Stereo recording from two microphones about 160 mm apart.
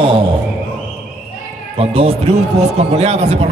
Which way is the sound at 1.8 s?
40° right (ahead or behind).